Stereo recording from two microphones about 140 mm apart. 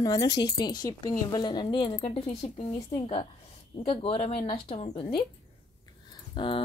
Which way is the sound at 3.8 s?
45° left (ahead or behind).